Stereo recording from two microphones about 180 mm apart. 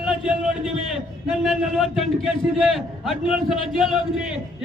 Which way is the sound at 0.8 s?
Centre (ahead or behind).